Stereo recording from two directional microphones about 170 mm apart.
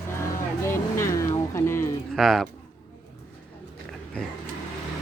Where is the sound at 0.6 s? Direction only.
15° left (ahead or behind).